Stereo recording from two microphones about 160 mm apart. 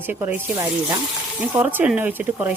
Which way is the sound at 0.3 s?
15° right (ahead or behind).